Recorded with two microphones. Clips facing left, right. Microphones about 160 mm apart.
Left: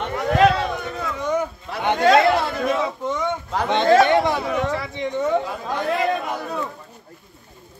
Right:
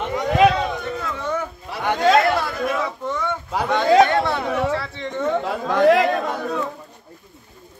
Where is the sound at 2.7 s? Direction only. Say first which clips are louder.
Left 2 dB; 20° left (ahead or behind).